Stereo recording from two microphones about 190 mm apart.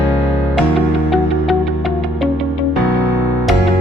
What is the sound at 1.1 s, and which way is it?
Music, centre (ahead or behind).